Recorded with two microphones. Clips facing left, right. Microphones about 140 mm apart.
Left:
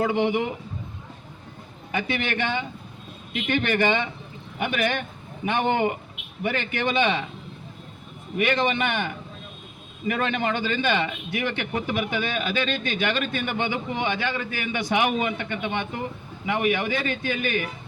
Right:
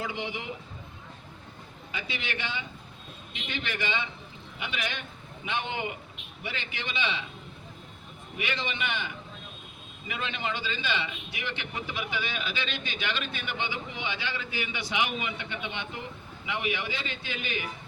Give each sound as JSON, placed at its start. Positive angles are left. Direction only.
{"t": 0.0, "sound": "a man's voice", "side_deg": 55}
{"t": 1.9, "sound": "a man's voice", "side_deg": 60}
{"t": 8.4, "sound": "a man's voice", "side_deg": 55}